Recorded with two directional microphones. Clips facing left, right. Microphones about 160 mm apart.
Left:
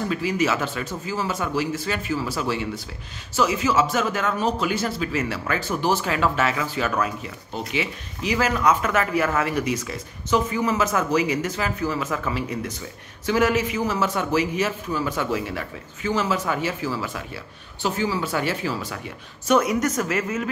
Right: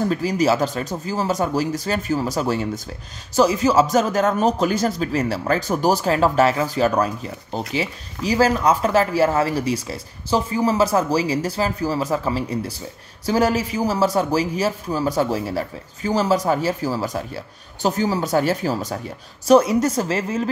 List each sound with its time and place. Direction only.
0.1 s speech: 40° right (ahead or behind)